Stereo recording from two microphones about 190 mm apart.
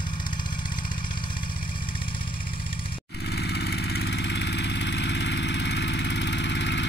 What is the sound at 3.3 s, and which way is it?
Vehicle, 65° left (ahead or behind).